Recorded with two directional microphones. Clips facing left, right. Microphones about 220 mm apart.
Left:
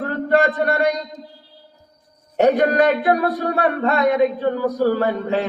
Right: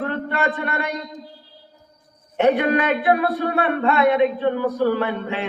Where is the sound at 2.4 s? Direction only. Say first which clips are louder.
Left 3 dB; 40° left (ahead or behind).